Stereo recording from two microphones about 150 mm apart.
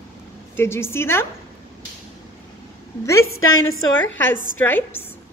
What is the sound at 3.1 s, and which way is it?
Speech, 20° left (ahead or behind).